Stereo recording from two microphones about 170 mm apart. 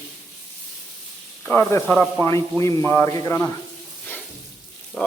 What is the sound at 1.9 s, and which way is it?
Speech, centre (ahead or behind).